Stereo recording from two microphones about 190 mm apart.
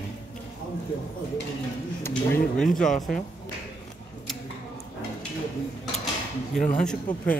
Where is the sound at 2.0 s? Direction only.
10° left (ahead or behind).